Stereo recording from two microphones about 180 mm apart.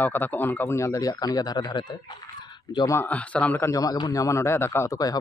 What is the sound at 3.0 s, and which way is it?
A man's voice, 10° left (ahead or behind).